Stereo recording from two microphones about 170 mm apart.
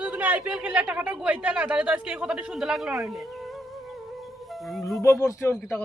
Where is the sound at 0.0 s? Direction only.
10° right (ahead or behind).